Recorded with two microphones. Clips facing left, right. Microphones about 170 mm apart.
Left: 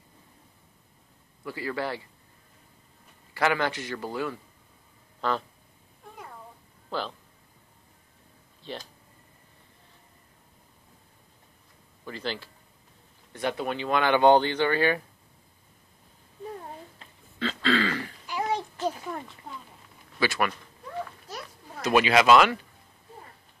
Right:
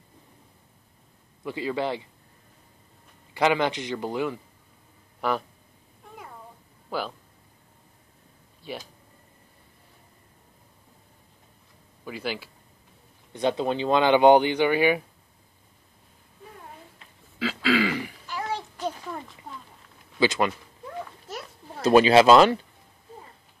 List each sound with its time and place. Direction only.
1.4 s a man's voice: 20° right (ahead or behind)
3.3 s a man's voice: 20° right (ahead or behind)
6.9 s speech: 10° right (ahead or behind)
8.6 s speech: 10° right (ahead or behind)
12.0 s speech: 10° right (ahead or behind)
13.3 s speech: 20° right (ahead or behind)
17.4 s throat clearing: 5° right (ahead or behind)
18.2 s a sound: 15° left (ahead or behind)
18.8 s a sound: 5° left (ahead or behind)
20.2 s a man's voice: 20° right (ahead or behind)
21.7 s a man's voice: 30° right (ahead or behind)